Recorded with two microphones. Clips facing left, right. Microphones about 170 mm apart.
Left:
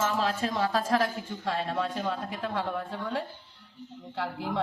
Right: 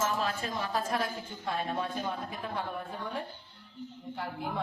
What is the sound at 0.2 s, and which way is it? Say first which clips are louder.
A man's voice: left 5 dB; 90° left.